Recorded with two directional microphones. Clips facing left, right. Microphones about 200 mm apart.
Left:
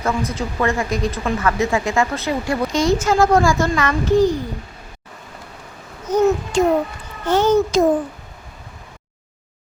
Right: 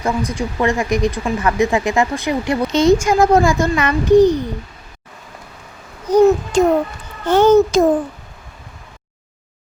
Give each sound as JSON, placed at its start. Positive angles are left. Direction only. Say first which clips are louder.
{"t": 0.0, "sound": "speech", "louder": "right 2 dB", "side_deg": -15}
{"t": 6.1, "sound": "babbling", "louder": "right 5 dB", "side_deg": -35}
{"t": 7.3, "sound": "babbling", "louder": "right 5 dB", "side_deg": -55}